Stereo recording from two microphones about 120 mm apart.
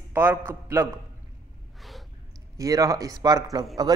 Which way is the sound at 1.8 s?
Centre (ahead or behind).